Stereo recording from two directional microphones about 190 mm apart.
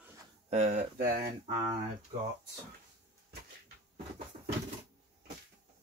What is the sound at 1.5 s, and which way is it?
Speech, 20° right (ahead or behind).